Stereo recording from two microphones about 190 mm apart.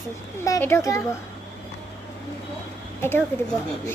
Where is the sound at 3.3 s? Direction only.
10° left (ahead or behind).